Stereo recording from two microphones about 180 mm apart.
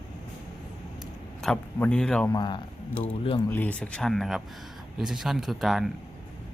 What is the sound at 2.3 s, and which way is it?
Speech, 25° left (ahead or behind).